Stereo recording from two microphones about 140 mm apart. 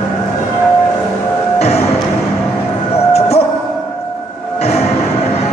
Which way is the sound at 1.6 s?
50° left (ahead or behind).